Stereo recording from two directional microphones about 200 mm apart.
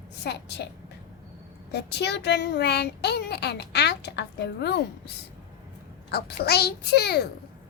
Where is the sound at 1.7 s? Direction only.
55° left (ahead or behind).